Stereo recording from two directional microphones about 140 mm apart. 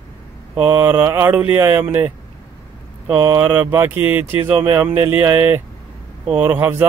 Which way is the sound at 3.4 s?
15° right (ahead or behind).